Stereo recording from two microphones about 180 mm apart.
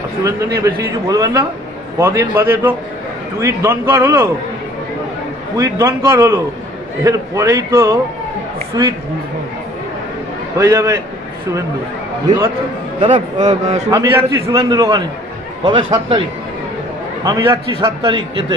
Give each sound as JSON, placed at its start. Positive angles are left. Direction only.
{"t": 1.0, "sound": "a man's voice", "side_deg": -20}
{"t": 5.6, "sound": "a man's voice", "side_deg": -20}
{"t": 10.6, "sound": "a man's voice", "side_deg": -15}
{"t": 13.1, "sound": "a man's voice", "side_deg": -40}
{"t": 13.8, "sound": "a man's voice", "side_deg": -20}